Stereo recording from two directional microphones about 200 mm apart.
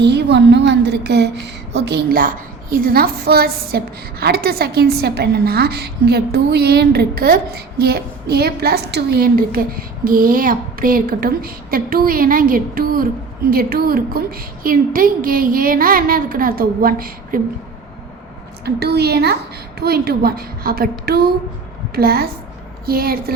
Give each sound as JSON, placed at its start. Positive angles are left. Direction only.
{"t": 0.0, "sound": "a woman's voice", "side_deg": -60}
{"t": 18.6, "sound": "a woman's voice", "side_deg": -55}